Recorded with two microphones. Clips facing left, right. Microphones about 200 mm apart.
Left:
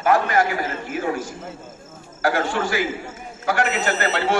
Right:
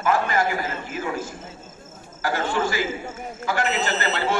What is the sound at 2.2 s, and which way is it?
A man's voice, 55° left (ahead or behind).